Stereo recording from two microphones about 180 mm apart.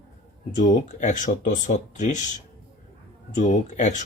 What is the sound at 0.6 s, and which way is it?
Speech, 45° left (ahead or behind).